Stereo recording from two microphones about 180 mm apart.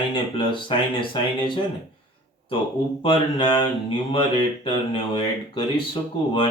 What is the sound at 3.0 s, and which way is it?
Mantra, 25° left (ahead or behind).